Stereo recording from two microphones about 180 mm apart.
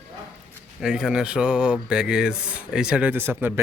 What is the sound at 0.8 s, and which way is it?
Speech, 5° right (ahead or behind).